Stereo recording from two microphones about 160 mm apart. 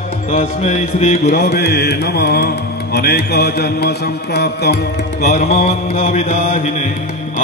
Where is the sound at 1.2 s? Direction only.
75° left (ahead or behind).